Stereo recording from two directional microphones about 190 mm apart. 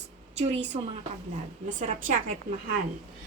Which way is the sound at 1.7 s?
45° right (ahead or behind).